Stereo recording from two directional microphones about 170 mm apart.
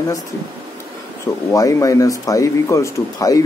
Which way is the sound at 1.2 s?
20° left (ahead or behind).